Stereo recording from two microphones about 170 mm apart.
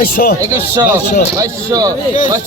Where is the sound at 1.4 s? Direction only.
20° right (ahead or behind).